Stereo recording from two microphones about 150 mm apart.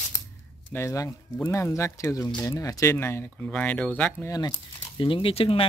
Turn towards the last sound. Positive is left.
turn(degrees=40)  # may be behind; listen again after turning